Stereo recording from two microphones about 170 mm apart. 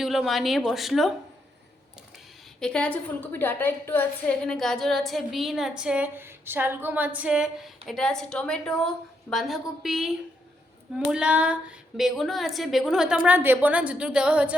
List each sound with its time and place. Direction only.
0.0 s a woman's voice: centre (ahead or behind)
2.6 s a woman's voice: 5° left (ahead or behind)